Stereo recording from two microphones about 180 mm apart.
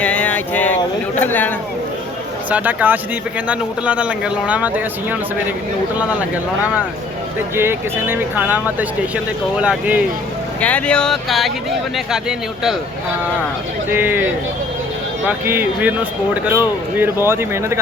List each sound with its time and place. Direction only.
0.0 s a sound: 5° left (ahead or behind)
1.2 s speech: 10° left (ahead or behind)
2.5 s speech: 10° right (ahead or behind)
7.5 s speech: 15° right (ahead or behind)
10.6 s speech: 10° left (ahead or behind)
13.9 s speech: 10° right (ahead or behind)
15.3 s speech: 10° right (ahead or behind)